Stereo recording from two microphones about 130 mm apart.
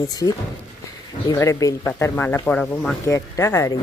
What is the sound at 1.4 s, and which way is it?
Speech, 25° left (ahead or behind).